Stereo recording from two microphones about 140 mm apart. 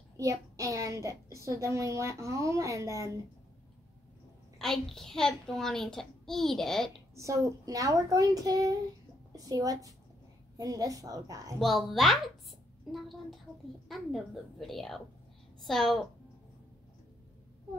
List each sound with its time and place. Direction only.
0.2 s a child's voice: 25° right (ahead or behind)
4.6 s a child's voice: centre (ahead or behind)
7.2 s a child's voice: 25° right (ahead or behind)
11.6 s a child's voice: centre (ahead or behind)